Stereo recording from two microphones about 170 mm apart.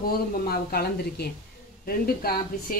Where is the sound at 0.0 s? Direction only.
60° left (ahead or behind).